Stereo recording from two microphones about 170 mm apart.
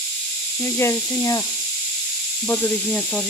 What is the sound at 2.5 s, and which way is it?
Speech, 10° left (ahead or behind).